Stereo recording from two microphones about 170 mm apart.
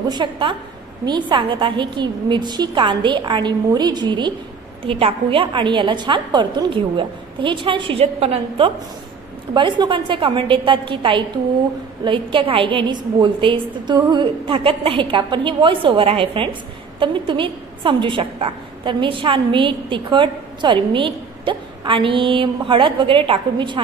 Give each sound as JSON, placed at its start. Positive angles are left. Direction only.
{"t": 0.1, "sound": "a woman's voice", "side_deg": -30}